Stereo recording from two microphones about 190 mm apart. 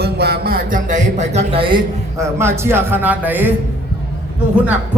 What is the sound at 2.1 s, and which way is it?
A man's voice, 15° right (ahead or behind).